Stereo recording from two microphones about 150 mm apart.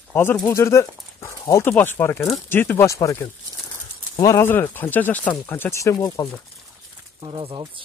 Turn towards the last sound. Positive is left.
turn(degrees=-30)  # may be behind; listen again after turning